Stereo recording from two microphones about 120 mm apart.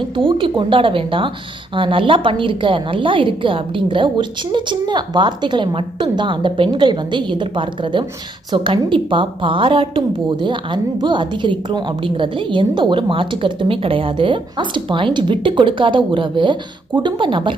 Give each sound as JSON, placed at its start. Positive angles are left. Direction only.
{"t": 0.2, "sound": "a woman's voice", "side_deg": -45}